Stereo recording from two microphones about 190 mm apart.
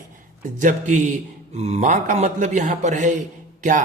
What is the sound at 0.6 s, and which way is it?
A man's voice, 40° right (ahead or behind).